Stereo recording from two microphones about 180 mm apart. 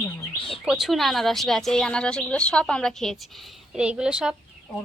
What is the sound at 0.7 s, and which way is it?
Speech, centre (ahead or behind).